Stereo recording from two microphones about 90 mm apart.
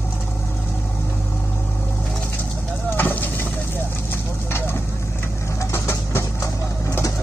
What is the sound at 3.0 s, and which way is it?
Fire, 20° left (ahead or behind).